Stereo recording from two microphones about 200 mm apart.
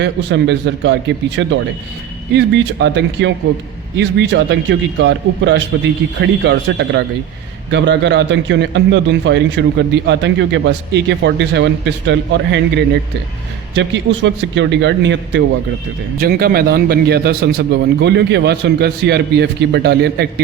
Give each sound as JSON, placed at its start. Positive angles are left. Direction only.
{"t": 0.0, "sound": "a man's voice", "side_deg": -60}
{"t": 16.1, "sound": "a man's voice", "side_deg": -50}